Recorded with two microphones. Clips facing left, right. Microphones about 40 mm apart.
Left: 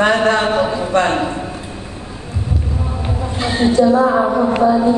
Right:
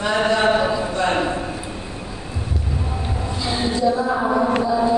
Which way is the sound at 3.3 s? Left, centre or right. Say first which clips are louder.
Left 7 dB; left.